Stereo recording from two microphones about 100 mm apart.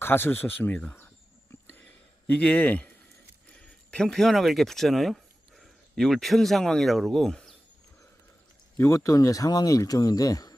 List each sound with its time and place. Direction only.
0.0 s speech: 20° left (ahead or behind)
2.3 s a man's voice: 15° left (ahead or behind)
3.9 s speech: 5° left (ahead or behind)
8.8 s speech: 30° left (ahead or behind)